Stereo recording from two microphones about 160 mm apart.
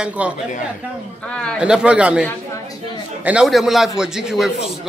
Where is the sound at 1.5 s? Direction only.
5° right (ahead or behind).